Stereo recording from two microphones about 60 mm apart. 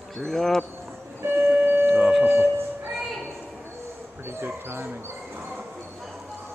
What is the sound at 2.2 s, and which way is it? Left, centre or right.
Music, right.